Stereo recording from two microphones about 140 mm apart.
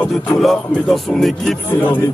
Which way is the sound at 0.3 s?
Centre (ahead or behind).